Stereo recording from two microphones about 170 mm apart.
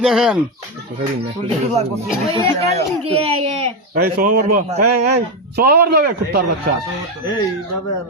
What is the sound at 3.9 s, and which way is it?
A man's voice, 65° right (ahead or behind).